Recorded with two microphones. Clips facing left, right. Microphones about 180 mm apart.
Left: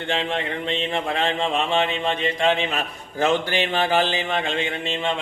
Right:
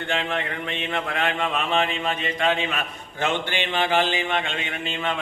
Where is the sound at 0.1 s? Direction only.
30° left (ahead or behind).